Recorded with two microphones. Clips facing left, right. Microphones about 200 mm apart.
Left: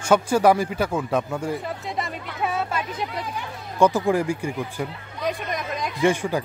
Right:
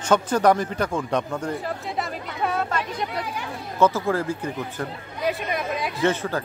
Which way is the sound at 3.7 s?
15° left (ahead or behind).